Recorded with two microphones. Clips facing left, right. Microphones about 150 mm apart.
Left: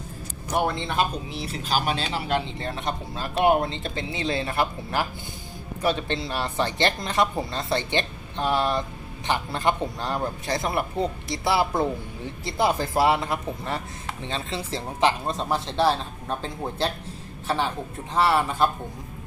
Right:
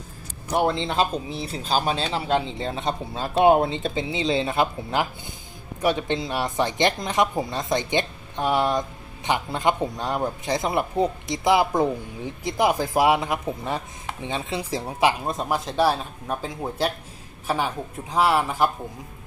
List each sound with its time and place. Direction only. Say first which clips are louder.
1.7 s a man's voice: right 2 dB; 30° right (ahead or behind); by 18.7 s 10° right (ahead or behind)